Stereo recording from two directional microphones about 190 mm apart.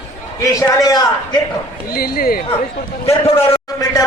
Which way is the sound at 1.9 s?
50° left (ahead or behind).